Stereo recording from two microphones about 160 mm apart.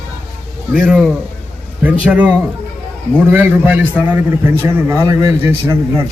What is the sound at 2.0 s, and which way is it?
A man's voice, 10° right (ahead or behind).